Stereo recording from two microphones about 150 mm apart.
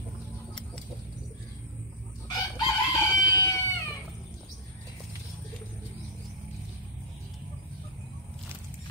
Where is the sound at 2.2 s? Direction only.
25° left (ahead or behind).